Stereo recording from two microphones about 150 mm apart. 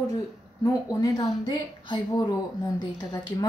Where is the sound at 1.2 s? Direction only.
30° left (ahead or behind).